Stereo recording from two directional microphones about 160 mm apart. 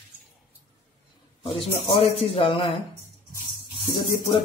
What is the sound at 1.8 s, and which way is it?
Speech, 40° left (ahead or behind).